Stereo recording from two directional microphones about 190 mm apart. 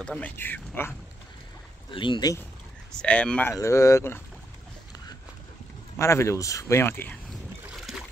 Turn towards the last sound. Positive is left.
turn(degrees=0)  # may be behind; listen again after turning